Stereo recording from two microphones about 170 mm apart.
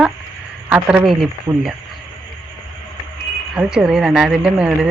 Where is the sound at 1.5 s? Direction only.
15° right (ahead or behind).